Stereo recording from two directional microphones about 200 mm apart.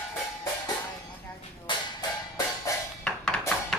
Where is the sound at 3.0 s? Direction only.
5° left (ahead or behind).